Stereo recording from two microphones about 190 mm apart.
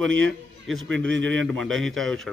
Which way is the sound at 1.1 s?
75° right (ahead or behind).